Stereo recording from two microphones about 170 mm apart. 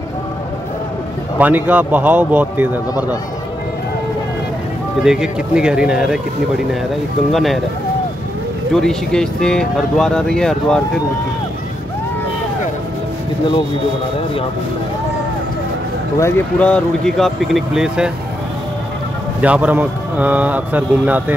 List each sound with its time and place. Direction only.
1.4 s a man's voice: 10° right (ahead or behind)
5.0 s speech: 5° right (ahead or behind)
7.3 s speech: centre (ahead or behind)
8.8 s speech: 5° left (ahead or behind)
16.2 s speech: 10° left (ahead or behind); by 18.1 s 5° right (ahead or behind)
19.4 s a man's voice: 10° right (ahead or behind)